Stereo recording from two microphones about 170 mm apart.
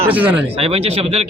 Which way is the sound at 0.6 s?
35° right (ahead or behind).